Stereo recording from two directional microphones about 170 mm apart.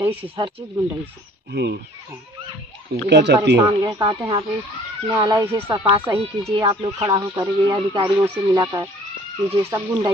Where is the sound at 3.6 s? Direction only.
25° right (ahead or behind).